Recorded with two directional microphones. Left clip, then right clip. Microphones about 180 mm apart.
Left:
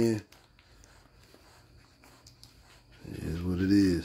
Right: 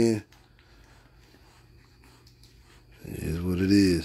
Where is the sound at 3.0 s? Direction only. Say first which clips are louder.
Right 4 dB; 15° right (ahead or behind).